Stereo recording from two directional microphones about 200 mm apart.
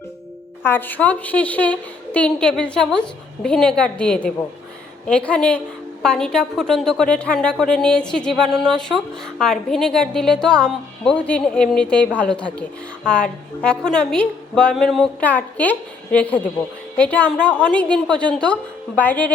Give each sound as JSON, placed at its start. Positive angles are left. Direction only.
{"t": 0.6, "sound": "a woman's voice", "side_deg": 10}